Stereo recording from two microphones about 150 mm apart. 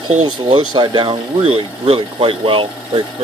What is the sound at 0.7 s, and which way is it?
Speech, 30° right (ahead or behind).